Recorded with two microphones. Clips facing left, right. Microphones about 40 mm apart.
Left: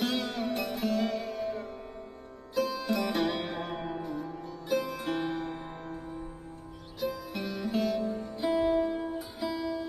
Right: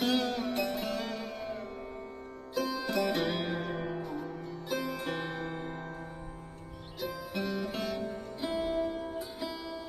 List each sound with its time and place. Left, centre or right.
0.0 s music: centre
7.0 s music: centre